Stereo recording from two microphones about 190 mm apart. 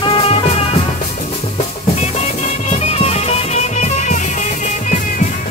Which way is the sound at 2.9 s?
35° left (ahead or behind).